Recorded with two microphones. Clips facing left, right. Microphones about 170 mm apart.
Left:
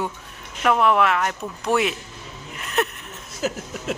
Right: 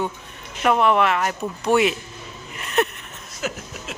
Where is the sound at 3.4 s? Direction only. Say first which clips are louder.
Left 3 dB; 35° left (ahead or behind).